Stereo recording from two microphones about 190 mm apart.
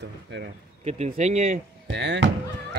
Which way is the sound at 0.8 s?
35° right (ahead or behind).